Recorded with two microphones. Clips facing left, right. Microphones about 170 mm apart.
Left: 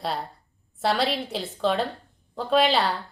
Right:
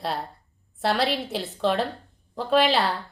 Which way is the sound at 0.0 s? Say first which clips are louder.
Even; centre (ahead or behind).